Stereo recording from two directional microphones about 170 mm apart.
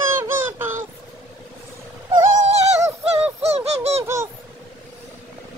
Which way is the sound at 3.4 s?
40° right (ahead or behind).